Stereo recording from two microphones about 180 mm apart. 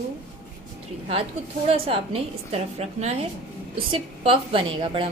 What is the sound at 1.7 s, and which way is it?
A woman's voice, 35° right (ahead or behind).